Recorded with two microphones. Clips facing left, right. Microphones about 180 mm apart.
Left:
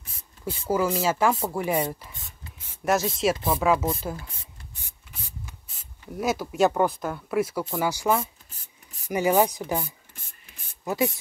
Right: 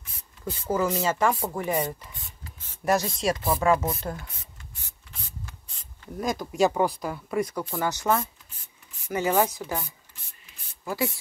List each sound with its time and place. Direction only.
0.5 s speech: 10° left (ahead or behind)
6.1 s speech: 5° left (ahead or behind)
10.8 s spray: 20° left (ahead or behind)